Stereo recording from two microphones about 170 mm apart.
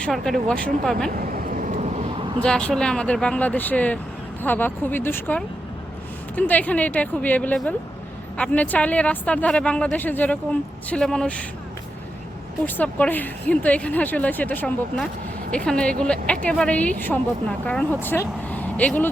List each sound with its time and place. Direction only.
0.0 s speech: 5° left (ahead or behind)
1.1 s vehicle: 55° right (ahead or behind); by 2.4 s 30° right (ahead or behind)
2.4 s a woman's voice: 5° left (ahead or behind)
12.6 s a woman's voice: 10° left (ahead or behind)